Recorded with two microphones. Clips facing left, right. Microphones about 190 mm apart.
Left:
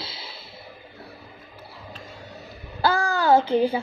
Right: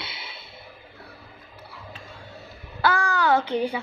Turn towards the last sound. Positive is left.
turn(degrees=30)  # may be behind; listen again after turning